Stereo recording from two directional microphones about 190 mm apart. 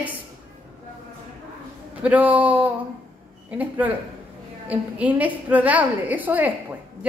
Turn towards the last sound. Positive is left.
turn(degrees=-10)  # may be behind; listen again after turning